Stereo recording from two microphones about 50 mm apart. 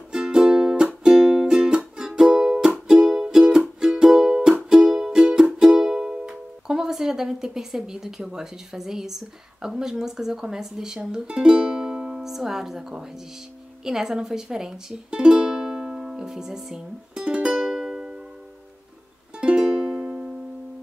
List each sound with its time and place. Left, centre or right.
0.1 s music: centre
8.7 s a woman's voice: centre
13.8 s music: centre
17.6 s music: centre
19.3 s music: centre